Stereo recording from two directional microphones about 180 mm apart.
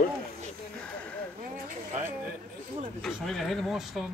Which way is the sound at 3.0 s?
Centre (ahead or behind).